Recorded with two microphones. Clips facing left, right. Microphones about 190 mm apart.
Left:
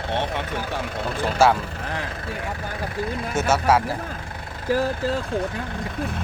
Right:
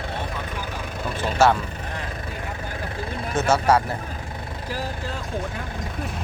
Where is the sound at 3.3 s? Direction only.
5° left (ahead or behind).